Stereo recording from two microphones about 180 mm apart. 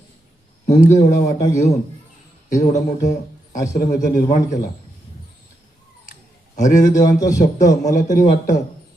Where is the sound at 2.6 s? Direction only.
40° left (ahead or behind).